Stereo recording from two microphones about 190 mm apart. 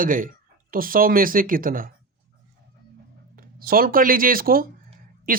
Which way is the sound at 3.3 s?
50° right (ahead or behind).